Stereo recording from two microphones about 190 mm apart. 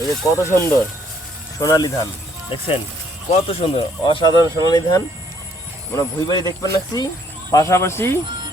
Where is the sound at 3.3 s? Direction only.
30° left (ahead or behind); by 8.2 s 15° left (ahead or behind).